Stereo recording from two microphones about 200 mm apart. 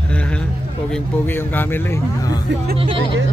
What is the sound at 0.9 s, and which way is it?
Speech, 10° left (ahead or behind).